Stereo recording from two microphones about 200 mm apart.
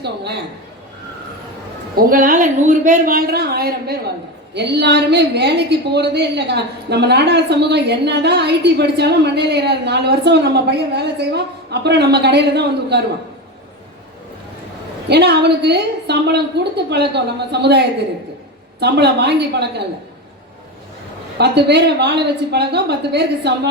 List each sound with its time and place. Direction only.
2.0 s a woman's voice: 45° right (ahead or behind)
15.1 s a woman's voice: 55° right (ahead or behind)
21.3 s a woman's voice: 55° right (ahead or behind)